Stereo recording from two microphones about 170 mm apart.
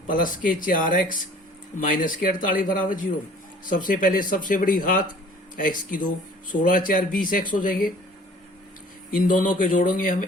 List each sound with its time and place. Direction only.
0.1 s speech: 50° left (ahead or behind)
9.1 s speech: 50° left (ahead or behind)